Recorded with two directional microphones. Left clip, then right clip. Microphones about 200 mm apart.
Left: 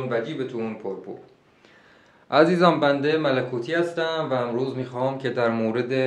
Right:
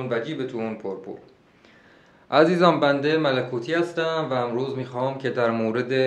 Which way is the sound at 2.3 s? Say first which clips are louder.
Even; 10° right (ahead or behind).